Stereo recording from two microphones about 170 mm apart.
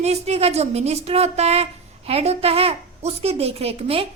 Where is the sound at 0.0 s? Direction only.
40° right (ahead or behind).